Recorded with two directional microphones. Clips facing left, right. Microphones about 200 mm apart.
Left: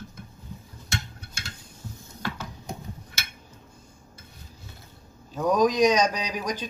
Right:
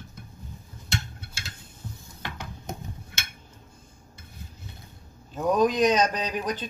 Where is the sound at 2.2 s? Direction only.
20° right (ahead or behind).